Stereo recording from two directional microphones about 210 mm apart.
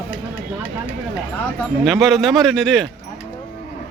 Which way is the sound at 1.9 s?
Centre (ahead or behind).